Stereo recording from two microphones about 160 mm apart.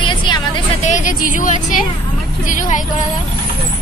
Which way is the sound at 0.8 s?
50° left (ahead or behind).